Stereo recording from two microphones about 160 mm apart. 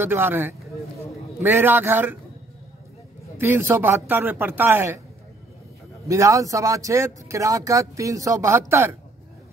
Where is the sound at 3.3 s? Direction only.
15° right (ahead or behind).